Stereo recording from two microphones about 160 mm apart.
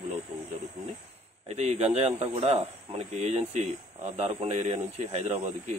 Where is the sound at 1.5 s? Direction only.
45° right (ahead or behind).